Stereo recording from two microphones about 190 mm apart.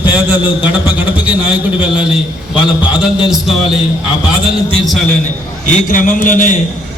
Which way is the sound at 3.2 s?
Centre (ahead or behind).